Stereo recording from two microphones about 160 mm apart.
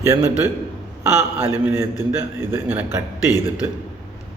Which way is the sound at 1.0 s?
15° right (ahead or behind).